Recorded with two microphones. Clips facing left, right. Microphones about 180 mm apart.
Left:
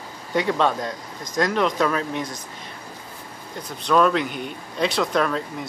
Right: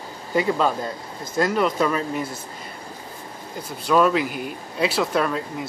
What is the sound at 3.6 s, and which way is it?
Speech, 5° right (ahead or behind).